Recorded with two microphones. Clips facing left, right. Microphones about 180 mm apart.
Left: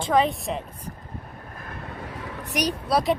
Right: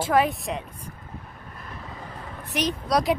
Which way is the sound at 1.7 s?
75° left (ahead or behind).